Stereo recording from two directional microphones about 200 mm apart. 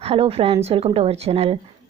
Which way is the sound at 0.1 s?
30° right (ahead or behind).